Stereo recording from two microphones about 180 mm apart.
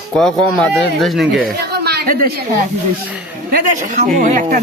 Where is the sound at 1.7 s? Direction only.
65° right (ahead or behind).